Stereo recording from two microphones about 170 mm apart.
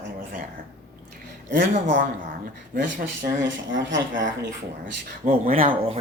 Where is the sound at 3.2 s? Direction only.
90° right.